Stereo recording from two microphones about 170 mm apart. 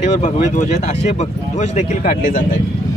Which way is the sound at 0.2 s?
45° left (ahead or behind).